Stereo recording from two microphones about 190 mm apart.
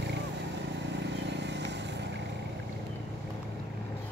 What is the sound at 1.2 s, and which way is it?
Vehicle, 65° right (ahead or behind).